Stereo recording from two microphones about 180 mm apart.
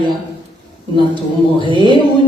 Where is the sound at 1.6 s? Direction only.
25° right (ahead or behind).